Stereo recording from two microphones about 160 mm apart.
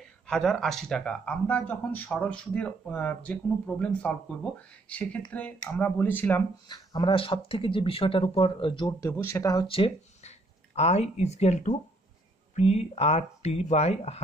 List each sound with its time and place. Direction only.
0.3 s speech: centre (ahead or behind)
6.7 s speech: 25° left (ahead or behind)
8.8 s speech: 20° left (ahead or behind)
9.7 s speech: 35° left (ahead or behind)